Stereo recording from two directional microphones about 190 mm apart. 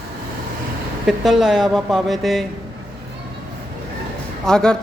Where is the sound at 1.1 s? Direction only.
Centre (ahead or behind).